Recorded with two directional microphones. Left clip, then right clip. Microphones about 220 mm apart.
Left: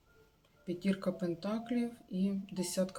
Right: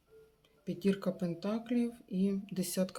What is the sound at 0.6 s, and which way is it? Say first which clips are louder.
Speech: right 2 dB; 35° right (ahead or behind).